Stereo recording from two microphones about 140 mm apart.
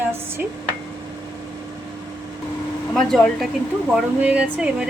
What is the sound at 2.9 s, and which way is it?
Speech, 5° left (ahead or behind).